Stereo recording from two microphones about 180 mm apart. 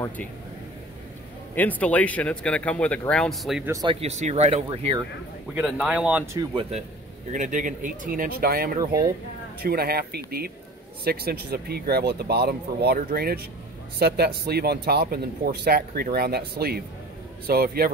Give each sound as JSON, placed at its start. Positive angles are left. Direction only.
{"t": 1.5, "sound": "a man's voice", "side_deg": 10}
{"t": 3.8, "sound": "speech", "side_deg": -35}
{"t": 5.5, "sound": "speech", "side_deg": -5}
{"t": 7.3, "sound": "speech", "side_deg": -45}